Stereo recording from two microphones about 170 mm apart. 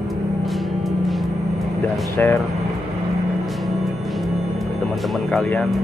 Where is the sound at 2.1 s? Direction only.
15° left (ahead or behind).